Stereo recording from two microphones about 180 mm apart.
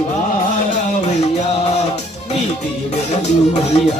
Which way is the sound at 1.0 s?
40° left (ahead or behind).